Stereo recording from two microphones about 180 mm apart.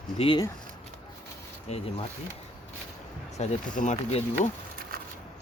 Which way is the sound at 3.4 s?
40° left (ahead or behind).